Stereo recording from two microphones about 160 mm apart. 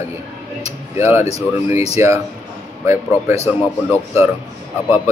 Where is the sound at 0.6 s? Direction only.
15° right (ahead or behind).